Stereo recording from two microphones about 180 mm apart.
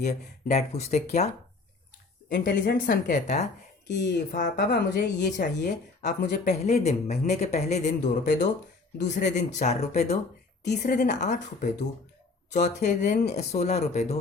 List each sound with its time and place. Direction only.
0.0 s speech: 40° left (ahead or behind)
2.3 s speech: 55° left (ahead or behind)
4.4 s speech: 65° left (ahead or behind); by 14.2 s 40° left (ahead or behind)